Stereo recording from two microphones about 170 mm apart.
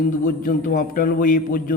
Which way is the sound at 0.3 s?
55° left (ahead or behind).